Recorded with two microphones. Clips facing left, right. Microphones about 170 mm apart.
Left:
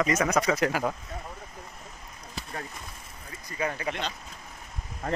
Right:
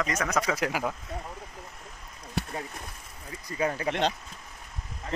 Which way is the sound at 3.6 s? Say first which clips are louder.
Right 2 dB; 30° right (ahead or behind).